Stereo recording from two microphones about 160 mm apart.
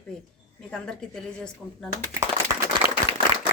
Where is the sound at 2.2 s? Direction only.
15° right (ahead or behind).